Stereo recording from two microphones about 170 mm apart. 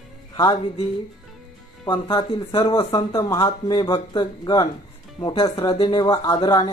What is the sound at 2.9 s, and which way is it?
Speech, 20° left (ahead or behind).